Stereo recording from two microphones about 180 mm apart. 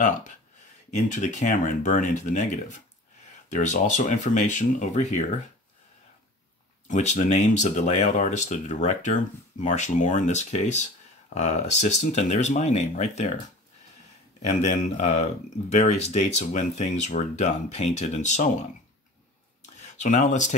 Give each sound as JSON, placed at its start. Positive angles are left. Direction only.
{"t": 0.9, "sound": "speech", "side_deg": 40}
{"t": 6.9, "sound": "speech", "side_deg": 40}
{"t": 14.4, "sound": "speech", "side_deg": 40}
{"t": 19.8, "sound": "speech", "side_deg": 40}